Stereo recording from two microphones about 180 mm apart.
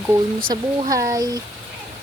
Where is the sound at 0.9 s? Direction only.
20° right (ahead or behind).